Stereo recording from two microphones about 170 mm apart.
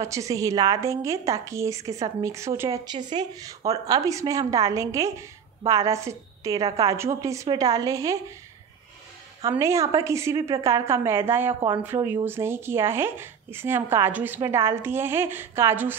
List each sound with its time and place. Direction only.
0.0 s a woman's voice: 20° right (ahead or behind)
9.5 s speech: 15° right (ahead or behind)